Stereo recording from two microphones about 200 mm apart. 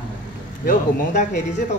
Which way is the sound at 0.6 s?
40° left (ahead or behind).